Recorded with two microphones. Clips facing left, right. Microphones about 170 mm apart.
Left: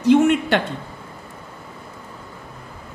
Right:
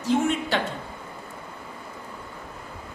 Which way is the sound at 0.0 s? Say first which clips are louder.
Left 9 dB; 65° left (ahead or behind).